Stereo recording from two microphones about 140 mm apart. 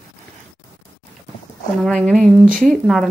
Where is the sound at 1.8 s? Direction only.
5° left (ahead or behind).